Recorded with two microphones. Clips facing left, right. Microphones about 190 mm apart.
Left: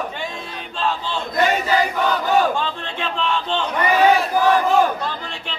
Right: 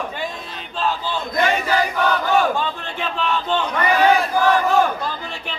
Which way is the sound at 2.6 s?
5° right (ahead or behind).